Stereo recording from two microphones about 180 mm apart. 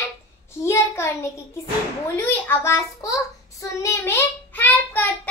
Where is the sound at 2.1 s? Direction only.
10° left (ahead or behind).